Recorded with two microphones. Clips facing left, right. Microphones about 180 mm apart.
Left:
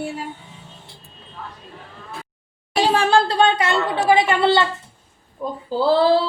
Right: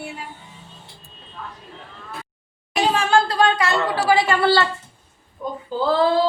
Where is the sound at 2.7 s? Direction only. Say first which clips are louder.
Left 2 dB; 30° left (ahead or behind).